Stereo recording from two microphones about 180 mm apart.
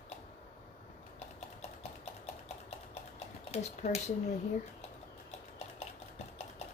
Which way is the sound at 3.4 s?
35° left (ahead or behind).